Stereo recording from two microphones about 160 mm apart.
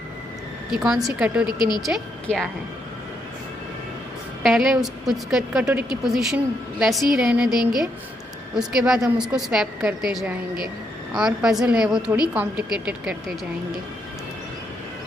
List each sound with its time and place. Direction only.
0.7 s a woman's voice: 5° right (ahead or behind)
4.4 s a woman's voice: centre (ahead or behind)
11.1 s a woman's voice: 5° right (ahead or behind)